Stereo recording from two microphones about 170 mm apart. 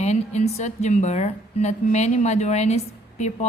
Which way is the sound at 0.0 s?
40° left (ahead or behind).